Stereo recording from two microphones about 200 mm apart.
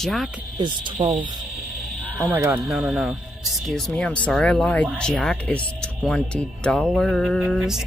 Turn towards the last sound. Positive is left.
turn(degrees=0)  # may be behind; listen again after turning